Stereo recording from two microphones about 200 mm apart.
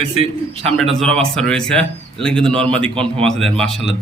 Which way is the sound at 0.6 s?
Centre (ahead or behind).